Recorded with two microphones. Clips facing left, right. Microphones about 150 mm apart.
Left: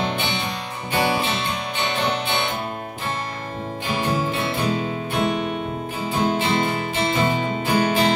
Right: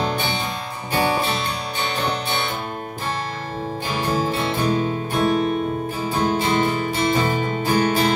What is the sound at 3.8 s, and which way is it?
Music, 40° right (ahead or behind).